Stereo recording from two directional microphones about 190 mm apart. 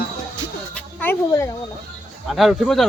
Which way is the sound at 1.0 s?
10° left (ahead or behind).